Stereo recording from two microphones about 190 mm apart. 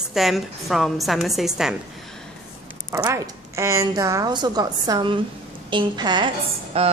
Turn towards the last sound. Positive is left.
turn(degrees=-30)  # may be behind; listen again after turning